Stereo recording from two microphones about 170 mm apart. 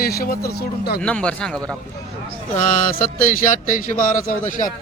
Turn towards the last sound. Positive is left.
turn(degrees=50)  # may be behind; listen again after turning